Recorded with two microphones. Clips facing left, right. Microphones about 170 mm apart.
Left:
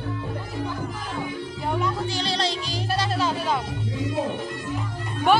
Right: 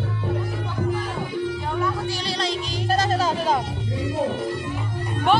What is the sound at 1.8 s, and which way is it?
Music, 25° left (ahead or behind).